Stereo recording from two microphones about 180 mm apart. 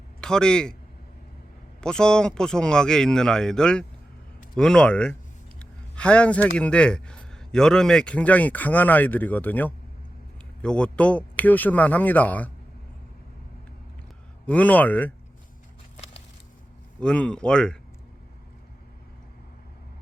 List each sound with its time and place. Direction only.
0.2 s speech: 5° left (ahead or behind)
1.8 s a man's voice: 5° left (ahead or behind)
14.4 s a man's voice: 10° left (ahead or behind)
17.0 s speech: 5° left (ahead or behind)